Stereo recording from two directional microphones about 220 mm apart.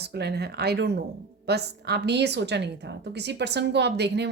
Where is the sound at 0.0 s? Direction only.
50° right (ahead or behind).